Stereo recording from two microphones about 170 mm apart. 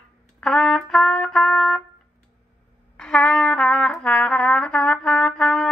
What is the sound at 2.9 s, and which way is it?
Trumpet, 5° left (ahead or behind).